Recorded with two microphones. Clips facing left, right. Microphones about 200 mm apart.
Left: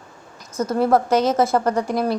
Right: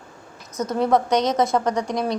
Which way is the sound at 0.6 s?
5° left (ahead or behind).